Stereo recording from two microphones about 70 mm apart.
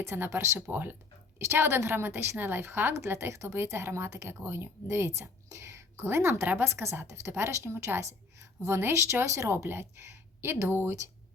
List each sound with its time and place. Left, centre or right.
0.1 s speech: right
9.6 s speech: right